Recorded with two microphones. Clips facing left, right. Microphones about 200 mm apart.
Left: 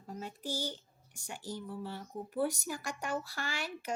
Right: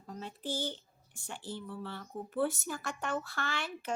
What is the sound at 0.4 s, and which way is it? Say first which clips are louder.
Speech: right 2 dB; 10° left (ahead or behind).